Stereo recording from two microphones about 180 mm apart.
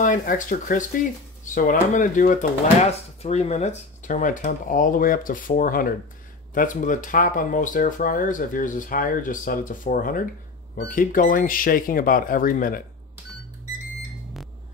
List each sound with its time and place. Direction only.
0.0 s speech: 50° left (ahead or behind)